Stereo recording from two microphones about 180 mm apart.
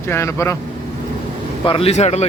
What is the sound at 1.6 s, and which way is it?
Speech, 30° left (ahead or behind).